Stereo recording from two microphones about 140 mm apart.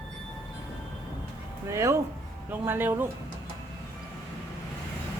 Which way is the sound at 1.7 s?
20° right (ahead or behind).